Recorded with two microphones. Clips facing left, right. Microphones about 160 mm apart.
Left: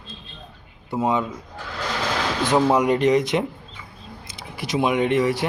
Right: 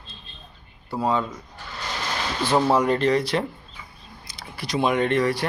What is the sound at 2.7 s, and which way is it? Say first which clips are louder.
Speech: left 2 dB; 15° left (ahead or behind).